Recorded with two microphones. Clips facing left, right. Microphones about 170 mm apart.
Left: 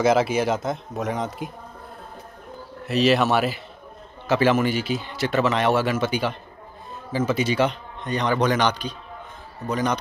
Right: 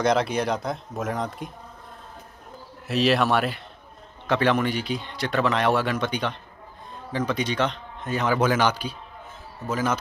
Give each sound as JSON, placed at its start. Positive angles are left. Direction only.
{"t": 0.0, "sound": "speech", "side_deg": 5}
{"t": 2.9, "sound": "speech", "side_deg": 0}
{"t": 8.0, "sound": "speech", "side_deg": -5}